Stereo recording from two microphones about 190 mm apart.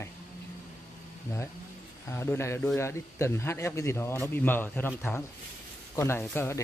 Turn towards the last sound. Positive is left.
turn(degrees=15)  # may be behind; listen again after turning